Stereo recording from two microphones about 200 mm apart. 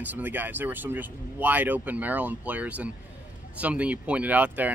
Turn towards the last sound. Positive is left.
turn(degrees=-10)  # may be behind; listen again after turning